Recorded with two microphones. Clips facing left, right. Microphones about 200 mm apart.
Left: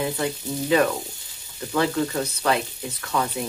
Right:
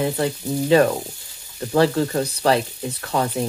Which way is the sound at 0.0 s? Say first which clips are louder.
Right 4 dB; 35° right (ahead or behind).